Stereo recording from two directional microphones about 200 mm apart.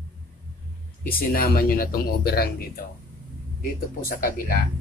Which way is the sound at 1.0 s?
45° left (ahead or behind).